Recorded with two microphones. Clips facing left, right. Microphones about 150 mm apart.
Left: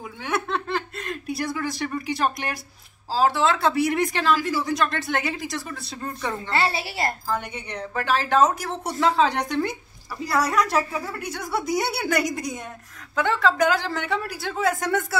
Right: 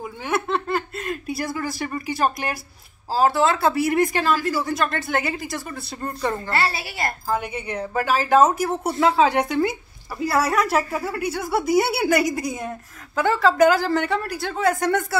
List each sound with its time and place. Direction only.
0.2 s a woman's voice: 5° right (ahead or behind)
6.5 s a woman's voice: 25° left (ahead or behind)
7.2 s a woman's voice: 5° right (ahead or behind)